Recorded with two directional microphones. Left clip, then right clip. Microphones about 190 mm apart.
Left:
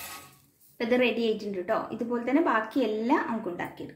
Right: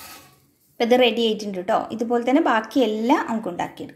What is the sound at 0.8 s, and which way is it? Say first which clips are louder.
A woman's voice: right 8 dB; 40° right (ahead or behind).